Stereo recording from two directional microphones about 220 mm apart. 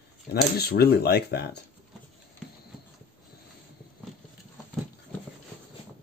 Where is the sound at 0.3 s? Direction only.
45° left (ahead or behind).